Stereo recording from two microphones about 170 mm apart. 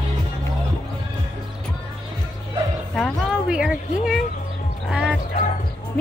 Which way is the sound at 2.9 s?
Centre (ahead or behind).